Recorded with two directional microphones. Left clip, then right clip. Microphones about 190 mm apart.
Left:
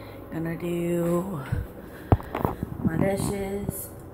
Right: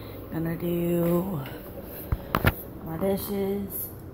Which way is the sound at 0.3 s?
Centre (ahead or behind).